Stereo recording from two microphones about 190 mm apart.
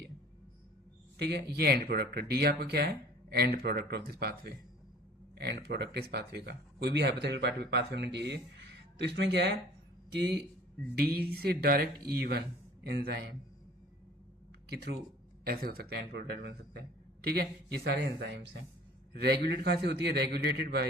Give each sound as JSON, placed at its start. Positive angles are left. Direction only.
{"t": 1.2, "sound": "a man's voice", "side_deg": -60}
{"t": 14.7, "sound": "speech", "side_deg": -60}